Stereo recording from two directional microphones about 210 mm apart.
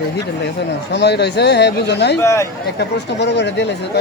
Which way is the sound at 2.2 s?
15° left (ahead or behind).